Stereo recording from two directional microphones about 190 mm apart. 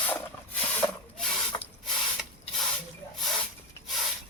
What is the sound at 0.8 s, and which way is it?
Rub, 20° left (ahead or behind).